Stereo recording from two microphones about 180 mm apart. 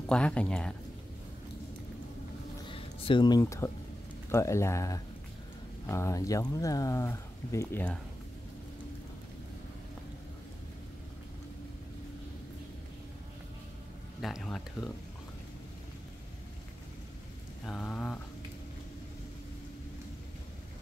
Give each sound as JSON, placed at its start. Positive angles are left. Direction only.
{"t": 0.1, "sound": "speech", "side_deg": 5}
{"t": 2.6, "sound": "a sound", "side_deg": 30}
{"t": 4.3, "sound": "speech", "side_deg": 15}
{"t": 14.2, "sound": "speech", "side_deg": 0}
{"t": 17.6, "sound": "speech", "side_deg": 5}